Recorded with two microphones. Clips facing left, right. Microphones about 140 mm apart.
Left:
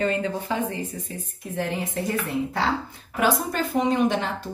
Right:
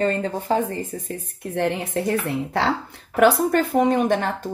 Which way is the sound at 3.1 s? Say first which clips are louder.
Right 7 dB; 60° right (ahead or behind).